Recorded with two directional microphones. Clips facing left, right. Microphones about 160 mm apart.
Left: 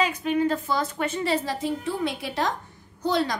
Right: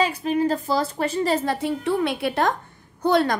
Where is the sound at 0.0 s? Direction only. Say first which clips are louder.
Right 2 dB; 35° right (ahead or behind).